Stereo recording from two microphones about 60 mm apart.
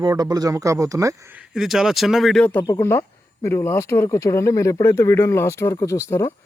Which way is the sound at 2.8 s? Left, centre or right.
Left.